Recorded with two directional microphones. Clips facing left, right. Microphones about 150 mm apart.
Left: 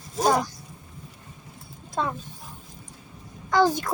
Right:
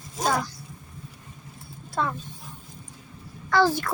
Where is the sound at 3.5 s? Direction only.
15° left (ahead or behind).